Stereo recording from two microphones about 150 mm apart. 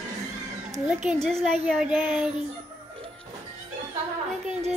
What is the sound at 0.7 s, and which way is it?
A woman's voice, centre (ahead or behind).